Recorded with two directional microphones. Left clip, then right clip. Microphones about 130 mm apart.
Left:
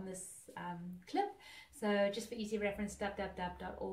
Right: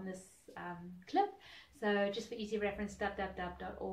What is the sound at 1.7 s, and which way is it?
A woman's voice, 20° right (ahead or behind).